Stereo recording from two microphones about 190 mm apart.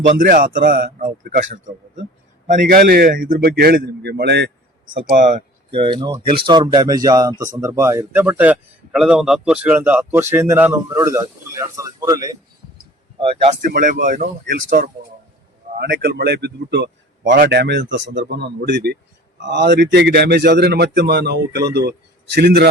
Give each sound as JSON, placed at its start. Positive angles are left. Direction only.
{"t": 0.2, "sound": "a man's voice", "side_deg": -50}
{"t": 2.5, "sound": "a man's voice", "side_deg": -45}
{"t": 5.1, "sound": "speech", "side_deg": -40}
{"t": 5.7, "sound": "speech", "side_deg": -25}
{"t": 12.7, "sound": "a sound", "side_deg": -25}
{"t": 13.6, "sound": "a man's voice", "side_deg": -45}